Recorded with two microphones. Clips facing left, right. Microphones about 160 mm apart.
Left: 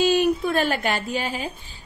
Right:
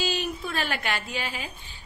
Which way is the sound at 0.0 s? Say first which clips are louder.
Left 10 dB; 55° left (ahead or behind).